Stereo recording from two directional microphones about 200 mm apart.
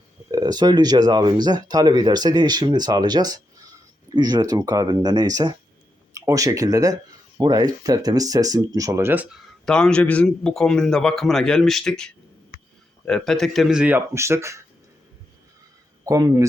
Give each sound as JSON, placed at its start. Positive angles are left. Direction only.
{"t": 0.3, "sound": "speech", "side_deg": -20}
{"t": 9.6, "sound": "a man's voice", "side_deg": 5}
{"t": 16.0, "sound": "speech", "side_deg": -15}